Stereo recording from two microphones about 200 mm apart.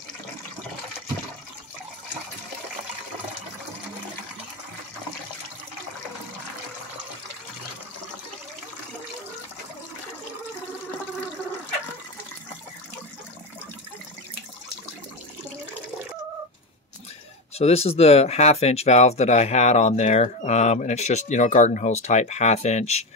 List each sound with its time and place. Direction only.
17.6 s speech: 30° left (ahead or behind)